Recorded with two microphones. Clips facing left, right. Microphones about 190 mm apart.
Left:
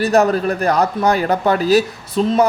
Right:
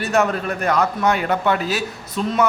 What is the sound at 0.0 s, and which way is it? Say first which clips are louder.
A man's voice: left 5 dB; 35° left (ahead or behind).